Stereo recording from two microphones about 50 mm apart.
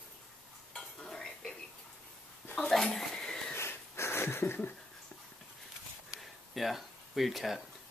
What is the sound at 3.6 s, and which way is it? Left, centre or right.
Wheeze, left.